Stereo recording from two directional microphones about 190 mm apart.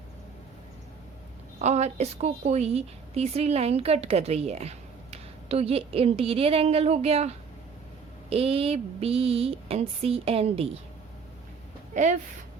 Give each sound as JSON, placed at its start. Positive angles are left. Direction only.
{"t": 1.6, "sound": "a woman's voice", "side_deg": -35}
{"t": 11.9, "sound": "a woman's voice", "side_deg": -40}